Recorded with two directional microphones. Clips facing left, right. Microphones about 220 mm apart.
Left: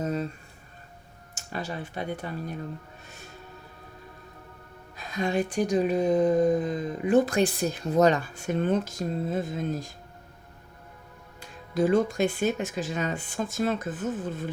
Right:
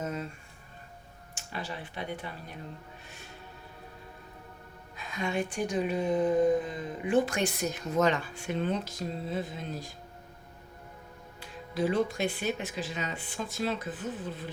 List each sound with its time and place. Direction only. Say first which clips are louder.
0.0 s a sound: left 6 dB; 35° left (ahead or behind)
1.4 s speech: left 5 dB; 45° left (ahead or behind)
4.9 s speech: left 5 dB; 40° left (ahead or behind)
11.3 s speech: left 6 dB; 45° left (ahead or behind)